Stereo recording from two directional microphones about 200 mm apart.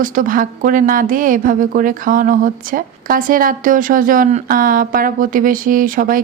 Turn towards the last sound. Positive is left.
turn(degrees=-45)  # may be behind; listen again after turning